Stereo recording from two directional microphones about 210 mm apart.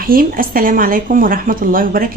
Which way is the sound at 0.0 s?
45° right (ahead or behind).